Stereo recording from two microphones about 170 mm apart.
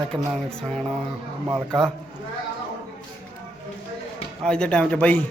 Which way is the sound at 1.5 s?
25° right (ahead or behind).